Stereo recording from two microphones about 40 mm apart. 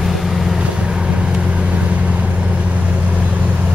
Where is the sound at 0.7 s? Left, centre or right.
Right.